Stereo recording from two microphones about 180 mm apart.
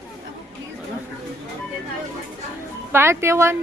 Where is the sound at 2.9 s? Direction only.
15° right (ahead or behind).